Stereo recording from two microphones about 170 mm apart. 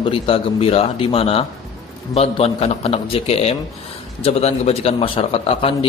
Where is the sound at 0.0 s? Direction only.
35° left (ahead or behind).